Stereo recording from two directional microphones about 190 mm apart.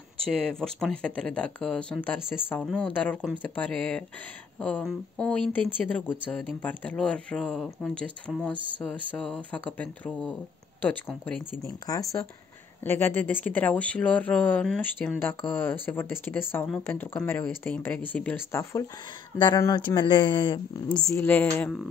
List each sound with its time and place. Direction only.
0.4 s speech: 5° left (ahead or behind)